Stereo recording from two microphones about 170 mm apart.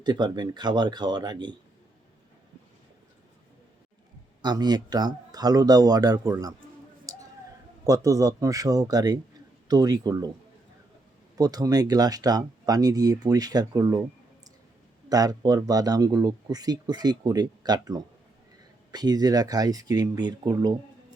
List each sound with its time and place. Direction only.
0.0 s speech: 25° right (ahead or behind)
4.4 s speech: 25° right (ahead or behind)
7.1 s a sound: 20° right (ahead or behind)
7.9 s speech: 20° right (ahead or behind)
11.3 s speech: 20° right (ahead or behind)
15.1 s speech: 20° right (ahead or behind)